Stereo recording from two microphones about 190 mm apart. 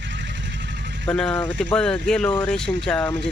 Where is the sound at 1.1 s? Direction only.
5° left (ahead or behind).